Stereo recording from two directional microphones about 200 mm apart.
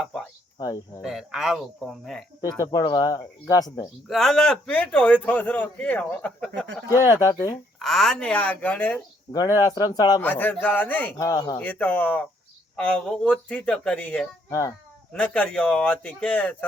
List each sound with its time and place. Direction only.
0.0 s cricket: 5° left (ahead or behind)
0.6 s speech: 20° left (ahead or behind)
1.0 s a man's voice: centre (ahead or behind)
2.4 s speech: 15° left (ahead or behind)
4.1 s a man's voice: centre (ahead or behind)
7.0 s speech: 15° left (ahead or behind)
7.8 s a man's voice: centre (ahead or behind); by 10.2 s 20° left (ahead or behind)
10.2 s a man's voice: 10° left (ahead or behind)